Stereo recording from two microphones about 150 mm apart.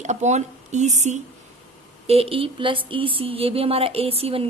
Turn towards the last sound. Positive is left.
turn(degrees=-40)  # may be behind; listen again after turning